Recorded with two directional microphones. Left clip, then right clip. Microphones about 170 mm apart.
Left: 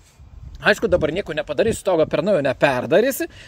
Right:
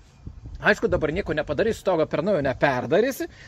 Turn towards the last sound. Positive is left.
turn(degrees=50)  # may be behind; listen again after turning